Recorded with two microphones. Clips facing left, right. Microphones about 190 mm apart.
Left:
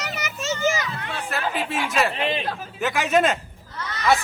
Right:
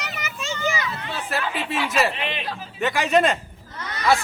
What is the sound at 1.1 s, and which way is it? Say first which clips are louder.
Speech: left 1 dB; centre (ahead or behind).